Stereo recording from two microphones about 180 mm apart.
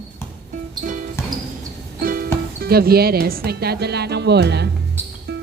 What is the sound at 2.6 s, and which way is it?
A woman's voice, 60° right (ahead or behind).